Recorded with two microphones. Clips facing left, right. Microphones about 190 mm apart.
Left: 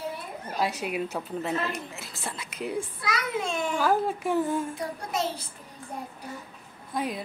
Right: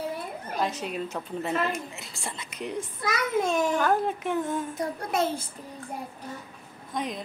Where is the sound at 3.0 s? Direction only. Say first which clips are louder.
Right 3 dB; 45° right (ahead or behind).